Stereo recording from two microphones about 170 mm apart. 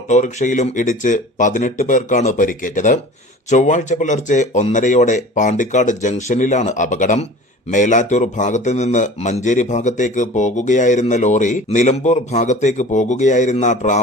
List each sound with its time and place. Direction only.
0.1 s speech: 45° left (ahead or behind)